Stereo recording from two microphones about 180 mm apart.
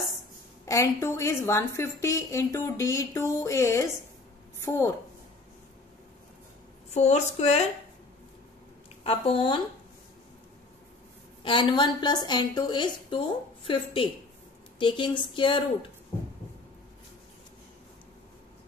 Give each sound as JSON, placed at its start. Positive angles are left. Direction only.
{"t": 0.7, "sound": "a woman's voice", "side_deg": 15}
{"t": 6.9, "sound": "a woman's voice", "side_deg": 40}
{"t": 9.0, "sound": "a woman's voice", "side_deg": 30}
{"t": 11.4, "sound": "a woman's voice", "side_deg": 25}
{"t": 14.8, "sound": "a woman's voice", "side_deg": 25}